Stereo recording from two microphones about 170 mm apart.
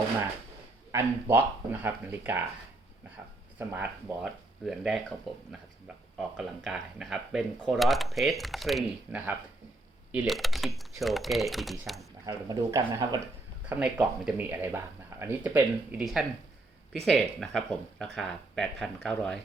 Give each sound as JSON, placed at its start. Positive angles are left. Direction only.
{"t": 0.9, "sound": "speech", "side_deg": -15}
{"t": 3.6, "sound": "speech", "side_deg": -10}
{"t": 12.2, "sound": "speech", "side_deg": -20}
{"t": 13.7, "sound": "speech", "side_deg": -5}